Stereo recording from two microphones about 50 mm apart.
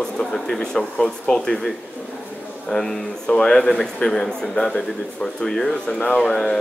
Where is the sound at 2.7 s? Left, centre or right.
Centre.